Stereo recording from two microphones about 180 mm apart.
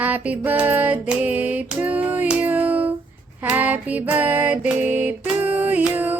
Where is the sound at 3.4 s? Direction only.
10° right (ahead or behind).